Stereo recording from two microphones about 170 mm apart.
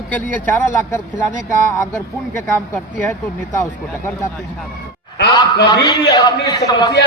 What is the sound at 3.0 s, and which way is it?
Speech, 15° left (ahead or behind).